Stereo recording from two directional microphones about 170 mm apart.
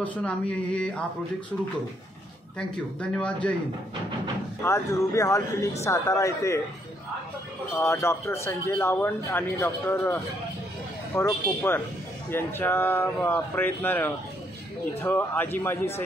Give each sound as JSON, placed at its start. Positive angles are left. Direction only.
{"t": 0.0, "sound": "speech", "side_deg": 10}
{"t": 3.0, "sound": "speech", "side_deg": 5}
{"t": 4.6, "sound": "speech", "side_deg": 15}
{"t": 7.7, "sound": "speech", "side_deg": 15}
{"t": 11.4, "sound": "speech", "side_deg": 15}